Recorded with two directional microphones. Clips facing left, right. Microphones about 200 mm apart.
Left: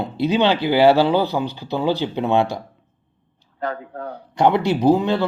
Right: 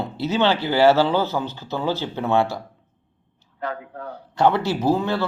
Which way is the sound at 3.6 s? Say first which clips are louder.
Left 3 dB; 35° left (ahead or behind).